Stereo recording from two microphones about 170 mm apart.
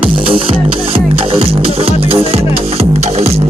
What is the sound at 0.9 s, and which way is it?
Music, 35° right (ahead or behind).